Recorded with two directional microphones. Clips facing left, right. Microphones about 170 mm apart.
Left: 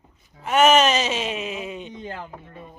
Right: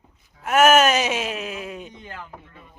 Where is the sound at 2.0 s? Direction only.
35° left (ahead or behind).